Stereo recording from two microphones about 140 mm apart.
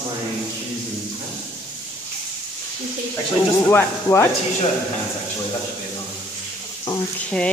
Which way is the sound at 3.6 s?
20° left (ahead or behind).